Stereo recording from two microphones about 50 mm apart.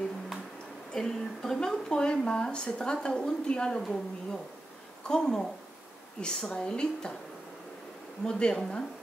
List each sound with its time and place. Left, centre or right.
0.9 s a woman's voice: centre
3.8 s a woman's voice: centre
8.3 s a woman's voice: centre